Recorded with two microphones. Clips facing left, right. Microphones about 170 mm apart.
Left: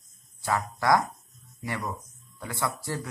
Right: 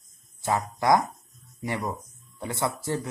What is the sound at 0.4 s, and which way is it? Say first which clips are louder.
Speech: right 2 dB; 20° right (ahead or behind).